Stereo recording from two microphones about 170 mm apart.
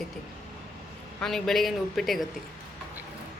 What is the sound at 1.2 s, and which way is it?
A woman's voice, centre (ahead or behind).